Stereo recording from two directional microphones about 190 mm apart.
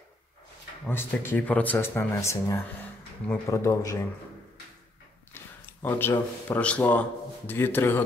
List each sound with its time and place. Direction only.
0.8 s speech: 10° left (ahead or behind)
5.3 s speech: 10° left (ahead or behind)